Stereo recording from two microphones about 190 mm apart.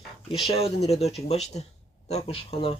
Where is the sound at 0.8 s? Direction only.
35° left (ahead or behind).